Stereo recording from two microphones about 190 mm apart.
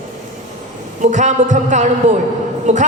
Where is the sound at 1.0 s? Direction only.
40° right (ahead or behind).